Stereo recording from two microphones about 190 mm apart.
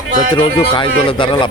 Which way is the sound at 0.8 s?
25° left (ahead or behind).